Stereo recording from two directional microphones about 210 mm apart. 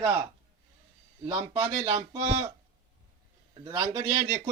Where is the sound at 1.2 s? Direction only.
25° right (ahead or behind).